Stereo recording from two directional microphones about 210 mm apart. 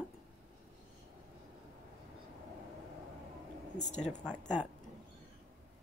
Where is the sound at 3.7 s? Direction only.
35° left (ahead or behind).